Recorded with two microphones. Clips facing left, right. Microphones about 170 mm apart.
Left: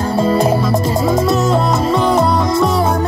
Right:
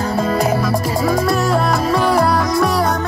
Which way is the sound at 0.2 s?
25° left (ahead or behind).